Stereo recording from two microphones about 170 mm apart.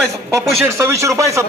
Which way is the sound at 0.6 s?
15° right (ahead or behind).